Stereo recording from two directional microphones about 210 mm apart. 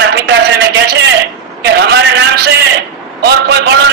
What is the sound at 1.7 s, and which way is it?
A man's voice, 55° right (ahead or behind).